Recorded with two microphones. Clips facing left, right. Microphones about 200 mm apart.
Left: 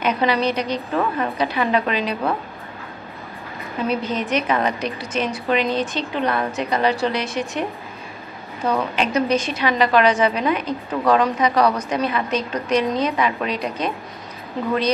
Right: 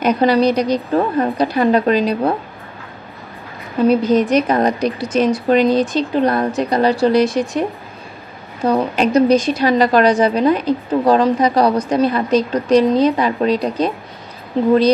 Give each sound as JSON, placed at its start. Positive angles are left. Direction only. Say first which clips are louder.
{"t": 0.0, "sound": "a woman's voice", "louder": "right 6 dB", "side_deg": -40}
{"t": 3.8, "sound": "a woman's voice", "louder": "right 10 dB", "side_deg": -35}
{"t": 8.6, "sound": "a woman's voice", "louder": "right 6 dB", "side_deg": -35}